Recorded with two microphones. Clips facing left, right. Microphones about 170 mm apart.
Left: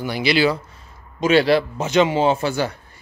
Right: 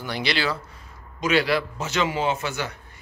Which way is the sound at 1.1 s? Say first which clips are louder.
Left 6 dB; 30° left (ahead or behind).